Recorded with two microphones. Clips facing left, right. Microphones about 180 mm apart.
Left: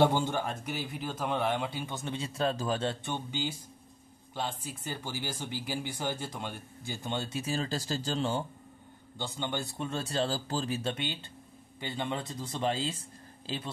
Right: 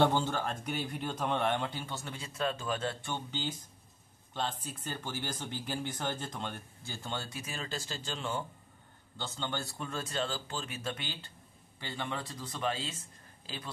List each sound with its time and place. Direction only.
0.0 s speech: 10° left (ahead or behind)
3.1 s speech: 10° left (ahead or behind); by 8.5 s 30° left (ahead or behind)
9.2 s speech: 15° left (ahead or behind); by 13.0 s 30° left (ahead or behind)